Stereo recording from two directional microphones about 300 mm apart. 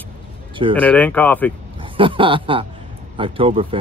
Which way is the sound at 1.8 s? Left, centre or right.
Centre.